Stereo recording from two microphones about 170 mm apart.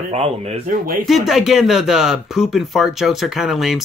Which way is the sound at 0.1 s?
40° right (ahead or behind).